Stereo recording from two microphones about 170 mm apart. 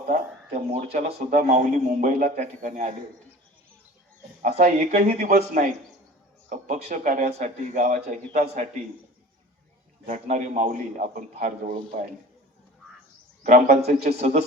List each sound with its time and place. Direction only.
0.1 s a man's voice: 45° right (ahead or behind)
4.4 s a man's voice: 40° right (ahead or behind)
10.1 s a man's voice: 50° right (ahead or behind)
11.7 s a man's voice: 30° right (ahead or behind)
13.4 s speech: 45° right (ahead or behind)